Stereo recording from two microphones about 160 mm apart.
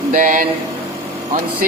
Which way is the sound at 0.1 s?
55° right (ahead or behind).